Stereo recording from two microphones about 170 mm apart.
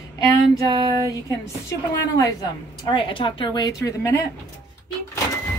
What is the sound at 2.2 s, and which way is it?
Speech, 20° left (ahead or behind).